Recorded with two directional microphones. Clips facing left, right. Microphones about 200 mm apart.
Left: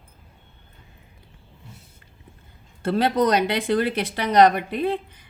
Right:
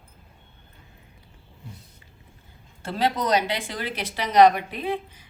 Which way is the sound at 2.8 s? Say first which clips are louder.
Left 5 dB; 60° left (ahead or behind).